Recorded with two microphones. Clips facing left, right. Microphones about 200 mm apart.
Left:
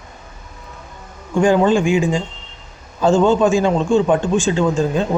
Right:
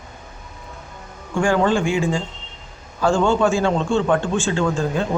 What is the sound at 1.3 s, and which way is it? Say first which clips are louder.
A man's voice: left 4 dB; 20° left (ahead or behind).